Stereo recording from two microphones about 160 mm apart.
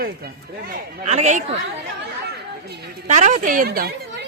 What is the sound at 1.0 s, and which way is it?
Speech, 45° right (ahead or behind).